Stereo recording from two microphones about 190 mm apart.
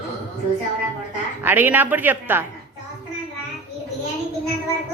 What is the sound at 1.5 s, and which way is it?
Speech, 10° right (ahead or behind).